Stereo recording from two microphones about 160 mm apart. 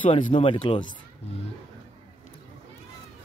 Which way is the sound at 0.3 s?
35° left (ahead or behind).